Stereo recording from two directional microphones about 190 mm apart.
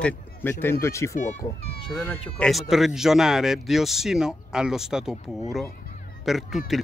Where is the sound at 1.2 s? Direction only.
40° left (ahead or behind).